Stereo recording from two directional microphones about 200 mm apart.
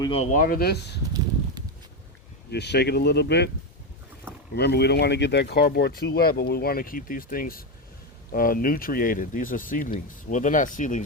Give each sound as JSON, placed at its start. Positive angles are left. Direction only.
{"t": 0.0, "sound": "speech", "side_deg": 25}
{"t": 0.3, "sound": "speech", "side_deg": 45}
{"t": 2.5, "sound": "speech", "side_deg": 55}
{"t": 4.5, "sound": "speech", "side_deg": 55}